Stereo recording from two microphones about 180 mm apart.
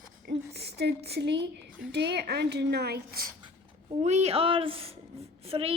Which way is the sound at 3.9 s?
40° right (ahead or behind).